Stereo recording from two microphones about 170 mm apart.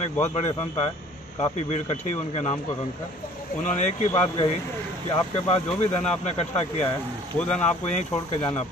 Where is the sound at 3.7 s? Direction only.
40° left (ahead or behind).